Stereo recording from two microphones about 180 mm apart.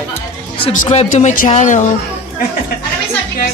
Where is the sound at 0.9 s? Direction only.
35° left (ahead or behind).